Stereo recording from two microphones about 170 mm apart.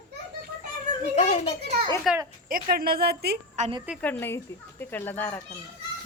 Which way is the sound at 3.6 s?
45° right (ahead or behind).